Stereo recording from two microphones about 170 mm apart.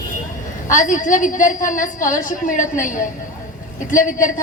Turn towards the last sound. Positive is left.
turn(degrees=50)  # may be behind; listen again after turning